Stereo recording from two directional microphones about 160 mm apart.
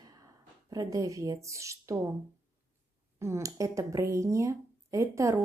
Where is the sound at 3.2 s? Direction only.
20° right (ahead or behind).